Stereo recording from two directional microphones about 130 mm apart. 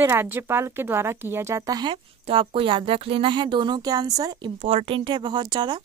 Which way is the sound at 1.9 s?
45° right (ahead or behind).